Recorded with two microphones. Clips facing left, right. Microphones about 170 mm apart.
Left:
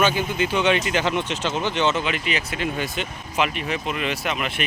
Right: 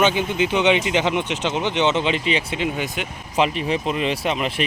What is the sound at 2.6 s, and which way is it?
Speech, 15° right (ahead or behind).